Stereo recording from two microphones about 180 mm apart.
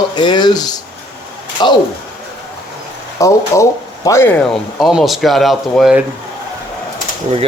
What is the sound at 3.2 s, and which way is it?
Speech, 15° left (ahead or behind).